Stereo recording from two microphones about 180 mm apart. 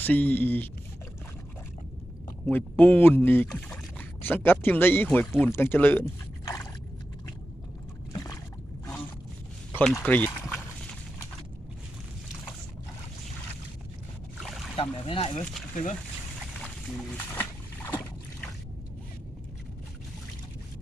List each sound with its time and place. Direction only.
0.0 s speech: 10° left (ahead or behind)
2.5 s speech: 10° left (ahead or behind)
8.1 s boat: 20° left (ahead or behind)
9.7 s speech: 5° left (ahead or behind)
14.8 s speech: 30° left (ahead or behind)
15.7 s speech: 45° left (ahead or behind)